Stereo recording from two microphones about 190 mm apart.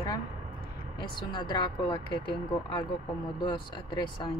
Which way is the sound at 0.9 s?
25° left (ahead or behind).